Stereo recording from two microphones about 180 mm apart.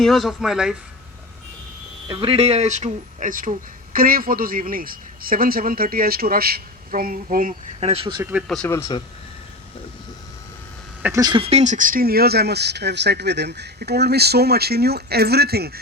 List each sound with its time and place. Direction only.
0.0 s speech: centre (ahead or behind)
2.0 s a man's voice: 30° right (ahead or behind); by 7.5 s 50° right (ahead or behind)
7.8 s speech: 35° right (ahead or behind)
8.2 s speech: 10° right (ahead or behind)
8.4 s speech: 5° left (ahead or behind)
8.7 s speech: 20° left (ahead or behind)
11.0 s speech: 20° right (ahead or behind); by 15.8 s 60° right (ahead or behind)